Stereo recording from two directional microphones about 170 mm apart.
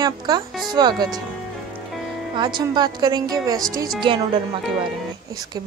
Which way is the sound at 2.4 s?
25° right (ahead or behind).